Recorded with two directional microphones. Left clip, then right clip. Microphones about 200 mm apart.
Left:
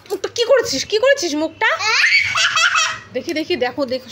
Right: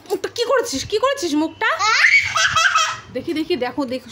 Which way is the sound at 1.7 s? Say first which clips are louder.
Right 2 dB; 20° right (ahead or behind).